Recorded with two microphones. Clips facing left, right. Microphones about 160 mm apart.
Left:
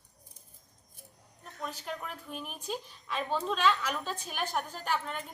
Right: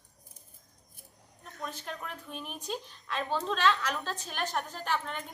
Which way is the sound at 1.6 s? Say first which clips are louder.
Left 1 dB; 5° left (ahead or behind).